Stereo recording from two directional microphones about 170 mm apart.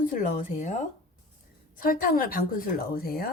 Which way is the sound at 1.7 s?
55° left (ahead or behind).